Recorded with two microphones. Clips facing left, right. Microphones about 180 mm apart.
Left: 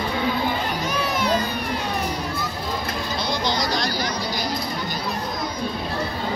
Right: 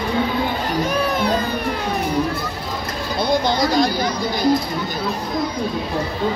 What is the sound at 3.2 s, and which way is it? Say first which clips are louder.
Chatter: right 8 dB; 55° right (ahead or behind).